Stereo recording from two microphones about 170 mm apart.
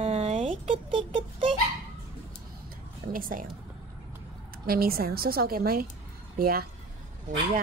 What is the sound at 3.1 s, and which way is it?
Speech, 55° right (ahead or behind).